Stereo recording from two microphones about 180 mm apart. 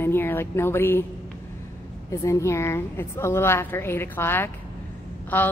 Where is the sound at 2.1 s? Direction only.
15° left (ahead or behind).